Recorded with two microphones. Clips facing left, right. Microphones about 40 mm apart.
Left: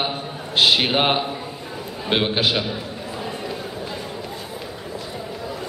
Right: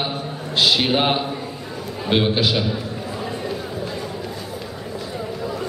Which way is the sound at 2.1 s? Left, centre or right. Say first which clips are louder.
Right 1 dB; centre.